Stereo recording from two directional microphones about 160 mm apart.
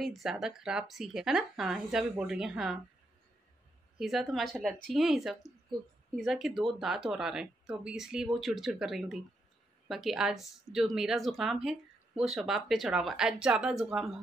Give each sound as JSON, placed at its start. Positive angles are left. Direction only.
{"t": 0.0, "sound": "speech", "side_deg": 0}
{"t": 4.0, "sound": "speech", "side_deg": 0}